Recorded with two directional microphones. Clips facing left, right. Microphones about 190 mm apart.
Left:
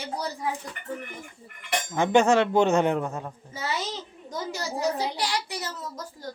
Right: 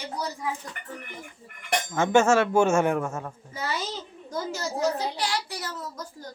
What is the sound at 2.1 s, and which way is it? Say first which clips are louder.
Speech: even; 15° left (ahead or behind).